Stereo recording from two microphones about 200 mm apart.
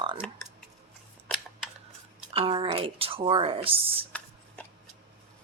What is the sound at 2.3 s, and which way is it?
Speech, 30° right (ahead or behind).